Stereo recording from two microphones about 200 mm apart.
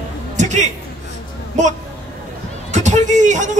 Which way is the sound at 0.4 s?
35° right (ahead or behind).